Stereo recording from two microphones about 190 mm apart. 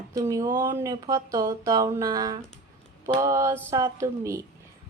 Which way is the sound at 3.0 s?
15° right (ahead or behind).